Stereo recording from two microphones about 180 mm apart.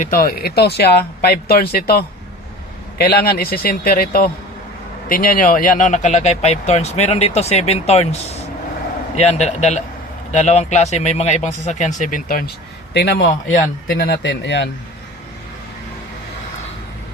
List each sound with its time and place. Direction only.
0.0 s a man's voice: 50° left (ahead or behind); by 8.0 s 35° left (ahead or behind)
9.1 s a man's voice: 40° left (ahead or behind)
12.9 s speech: 70° left (ahead or behind)